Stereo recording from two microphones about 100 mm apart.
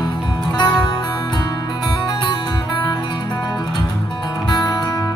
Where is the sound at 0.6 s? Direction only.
35° left (ahead or behind).